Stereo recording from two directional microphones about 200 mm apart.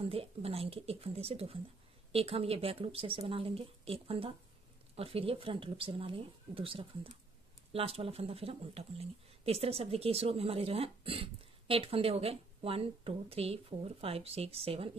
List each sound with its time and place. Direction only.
0.0 s speech: 30° right (ahead or behind)